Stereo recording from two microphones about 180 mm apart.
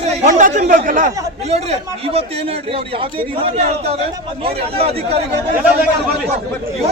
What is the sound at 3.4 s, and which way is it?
A man's voice, 35° right (ahead or behind).